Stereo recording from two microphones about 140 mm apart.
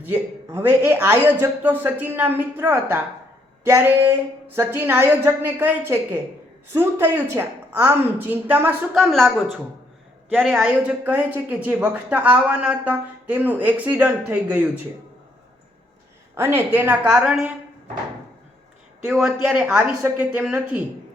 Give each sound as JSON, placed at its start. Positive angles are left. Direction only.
{"t": 0.0, "sound": "a woman's voice", "side_deg": -15}
{"t": 9.0, "sound": "a woman's voice", "side_deg": 0}
{"t": 16.3, "sound": "a woman's voice", "side_deg": -15}
{"t": 19.0, "sound": "a woman's voice", "side_deg": -5}